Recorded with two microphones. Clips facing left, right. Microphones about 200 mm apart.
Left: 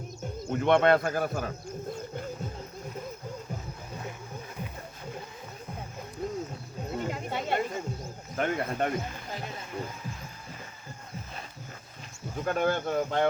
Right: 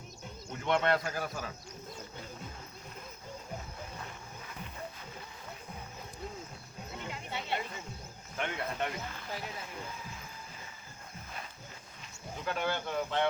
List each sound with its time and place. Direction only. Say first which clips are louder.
0.5 s a man's voice: left 8 dB; 55° left (ahead or behind)
6.2 s music: left 10 dB; 50° left (ahead or behind)
6.9 s a sound: left 8 dB; 45° left (ahead or behind)
8.4 s speech: left 7 dB; 45° left (ahead or behind)
12.5 s speech: left 7 dB; 50° left (ahead or behind)